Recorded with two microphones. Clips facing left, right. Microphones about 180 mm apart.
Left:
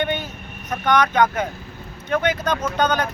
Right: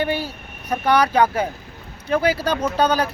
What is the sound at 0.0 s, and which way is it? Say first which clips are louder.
Vehicle: right 1 dB; 35° right (ahead or behind).